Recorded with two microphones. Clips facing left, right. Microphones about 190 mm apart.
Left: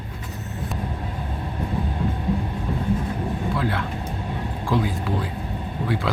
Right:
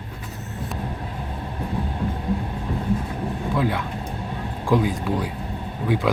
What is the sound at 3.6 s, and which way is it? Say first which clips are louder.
Speech: right 2 dB; 15° right (ahead or behind).